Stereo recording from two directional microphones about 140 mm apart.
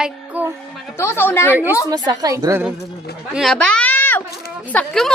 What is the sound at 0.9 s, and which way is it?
Speech, 15° left (ahead or behind).